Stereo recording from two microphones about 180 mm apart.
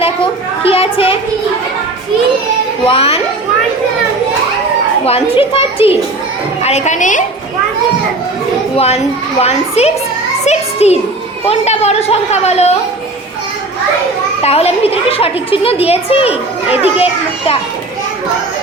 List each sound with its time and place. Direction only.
0.0 s a sound: 30° left (ahead or behind)
2.8 s a woman's voice: 30° left (ahead or behind)
5.0 s a woman's voice: 35° left (ahead or behind)
8.7 s a child's voice: 35° left (ahead or behind)
10.4 s a sound: 35° left (ahead or behind)
11.4 s a woman's voice: 35° left (ahead or behind)
14.4 s a woman's voice: 35° left (ahead or behind)